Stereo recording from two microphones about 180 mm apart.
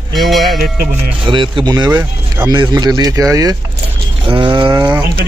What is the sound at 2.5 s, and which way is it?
Speech, 20° right (ahead or behind).